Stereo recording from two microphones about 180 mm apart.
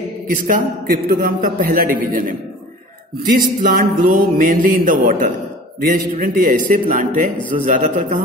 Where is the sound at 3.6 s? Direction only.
55° right (ahead or behind).